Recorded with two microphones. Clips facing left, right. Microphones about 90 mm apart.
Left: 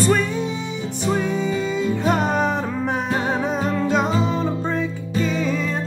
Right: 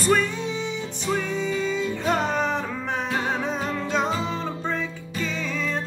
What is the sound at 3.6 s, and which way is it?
Music, 40° left (ahead or behind).